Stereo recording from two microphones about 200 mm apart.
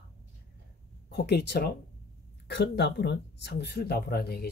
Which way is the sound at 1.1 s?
55° left (ahead or behind).